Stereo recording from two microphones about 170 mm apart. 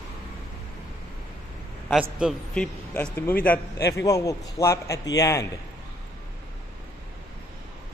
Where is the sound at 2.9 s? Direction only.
10° left (ahead or behind).